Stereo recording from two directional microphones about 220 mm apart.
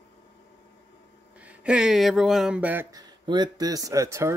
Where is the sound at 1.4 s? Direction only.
5° right (ahead or behind).